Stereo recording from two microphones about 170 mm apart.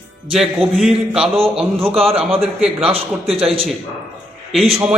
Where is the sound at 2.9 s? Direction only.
35° right (ahead or behind).